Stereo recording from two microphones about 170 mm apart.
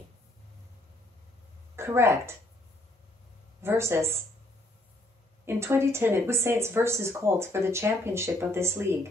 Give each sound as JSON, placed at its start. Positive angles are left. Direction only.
{"t": 1.8, "sound": "speech", "side_deg": -15}
{"t": 3.6, "sound": "speech", "side_deg": -15}
{"t": 5.4, "sound": "speech", "side_deg": -15}